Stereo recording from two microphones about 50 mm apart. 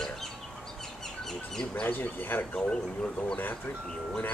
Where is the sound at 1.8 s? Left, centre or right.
Left.